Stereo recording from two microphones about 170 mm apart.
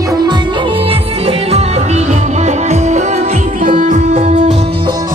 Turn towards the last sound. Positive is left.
turn(degrees=-40)  # may be behind; listen again after turning